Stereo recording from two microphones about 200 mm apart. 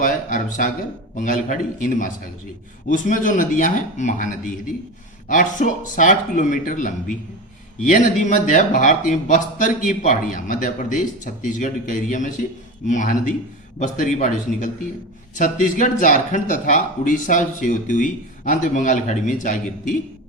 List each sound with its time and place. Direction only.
0.0 s speech: 40° left (ahead or behind)